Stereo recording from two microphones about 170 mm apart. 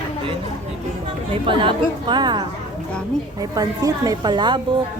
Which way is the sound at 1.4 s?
30° right (ahead or behind).